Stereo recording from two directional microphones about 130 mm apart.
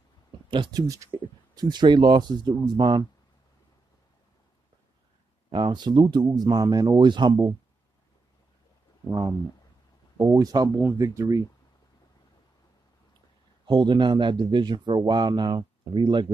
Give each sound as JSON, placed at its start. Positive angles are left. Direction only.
{"t": 0.5, "sound": "speech", "side_deg": -40}
{"t": 0.8, "sound": "speech", "side_deg": -25}
{"t": 5.5, "sound": "speech", "side_deg": -40}
{"t": 10.3, "sound": "speech", "side_deg": -30}
{"t": 13.7, "sound": "speech", "side_deg": -35}